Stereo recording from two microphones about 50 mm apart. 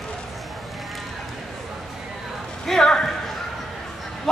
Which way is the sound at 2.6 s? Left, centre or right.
Centre.